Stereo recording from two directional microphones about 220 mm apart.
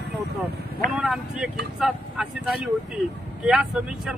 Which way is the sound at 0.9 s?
5° right (ahead or behind).